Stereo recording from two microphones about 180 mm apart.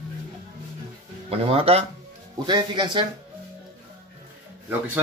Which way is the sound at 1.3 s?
30° right (ahead or behind).